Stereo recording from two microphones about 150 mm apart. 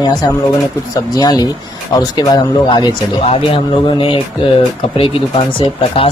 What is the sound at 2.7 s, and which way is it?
Speech, 35° left (ahead or behind).